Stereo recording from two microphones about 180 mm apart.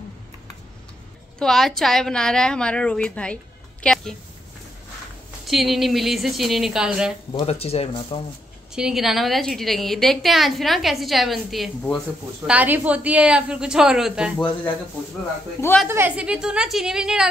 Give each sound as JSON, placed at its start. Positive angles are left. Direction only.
{"t": 1.4, "sound": "a woman's voice", "side_deg": 0}
{"t": 5.5, "sound": "a woman's voice", "side_deg": 0}
{"t": 7.3, "sound": "speech", "side_deg": 35}
{"t": 8.7, "sound": "a woman's voice", "side_deg": -5}
{"t": 12.4, "sound": "a woman's voice", "side_deg": -10}
{"t": 15.9, "sound": "a woman's voice", "side_deg": -10}